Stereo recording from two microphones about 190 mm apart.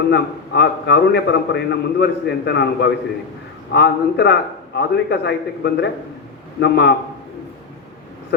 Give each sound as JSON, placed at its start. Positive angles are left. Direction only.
{"t": 0.1, "sound": "a man's voice", "side_deg": 65}